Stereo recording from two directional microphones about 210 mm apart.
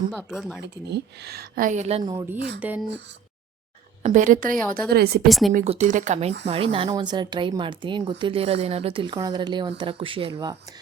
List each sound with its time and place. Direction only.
0.1 s speech: centre (ahead or behind)
0.9 s speech: 50° right (ahead or behind); by 2.0 s 35° right (ahead or behind)
2.0 s speech: 15° right (ahead or behind)
4.0 s speech: 35° right (ahead or behind)
5.3 s speech: centre (ahead or behind)
5.5 s speech: 35° right (ahead or behind)